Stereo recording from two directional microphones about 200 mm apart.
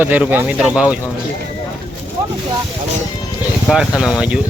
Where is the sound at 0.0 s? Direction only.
10° right (ahead or behind).